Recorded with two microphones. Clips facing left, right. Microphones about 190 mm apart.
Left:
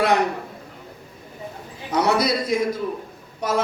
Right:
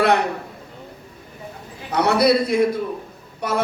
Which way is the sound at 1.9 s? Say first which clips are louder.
Right 4 dB; 60° right (ahead or behind).